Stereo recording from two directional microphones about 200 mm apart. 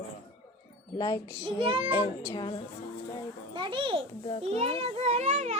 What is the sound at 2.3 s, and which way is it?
Wind chime, 25° left (ahead or behind).